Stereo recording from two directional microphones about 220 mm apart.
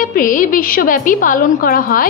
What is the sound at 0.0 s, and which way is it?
A woman's voice, 40° left (ahead or behind).